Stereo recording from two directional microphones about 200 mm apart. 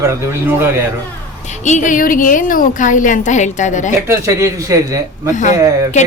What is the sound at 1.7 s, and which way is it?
A woman's voice, 40° left (ahead or behind).